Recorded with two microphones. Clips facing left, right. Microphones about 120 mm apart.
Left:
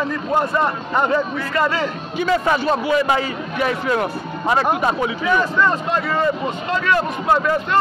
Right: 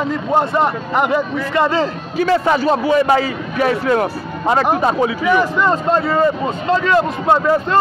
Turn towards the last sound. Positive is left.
turn(degrees=-25)  # may be behind; listen again after turning